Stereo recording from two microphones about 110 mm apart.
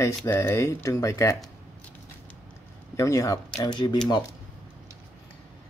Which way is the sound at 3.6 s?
45° left (ahead or behind).